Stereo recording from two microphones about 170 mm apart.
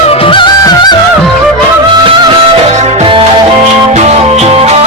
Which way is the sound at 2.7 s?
40° right (ahead or behind).